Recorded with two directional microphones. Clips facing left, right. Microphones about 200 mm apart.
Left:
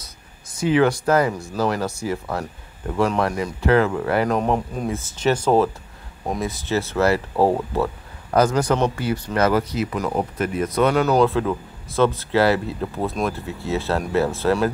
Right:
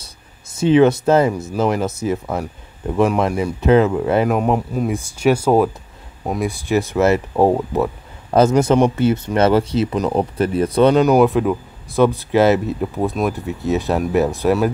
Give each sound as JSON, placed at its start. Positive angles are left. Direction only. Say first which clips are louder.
{"t": 0.6, "sound": "speech", "louder": "right 5 dB", "side_deg": -25}
{"t": 4.3, "sound": "speech", "louder": "right 3 dB", "side_deg": -5}